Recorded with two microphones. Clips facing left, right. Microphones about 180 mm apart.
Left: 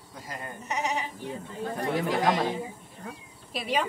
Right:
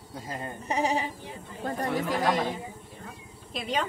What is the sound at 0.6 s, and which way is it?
Sheep, 30° right (ahead or behind).